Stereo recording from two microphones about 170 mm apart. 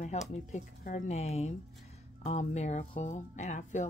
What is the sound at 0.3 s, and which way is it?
Speech, 45° left (ahead or behind).